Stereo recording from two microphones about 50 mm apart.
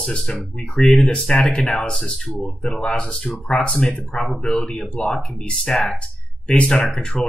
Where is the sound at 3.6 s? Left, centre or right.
Left.